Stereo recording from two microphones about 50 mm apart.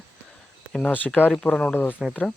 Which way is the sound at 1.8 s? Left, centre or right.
Left.